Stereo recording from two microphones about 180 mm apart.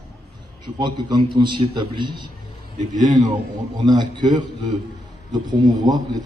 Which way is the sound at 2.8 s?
45° right (ahead or behind).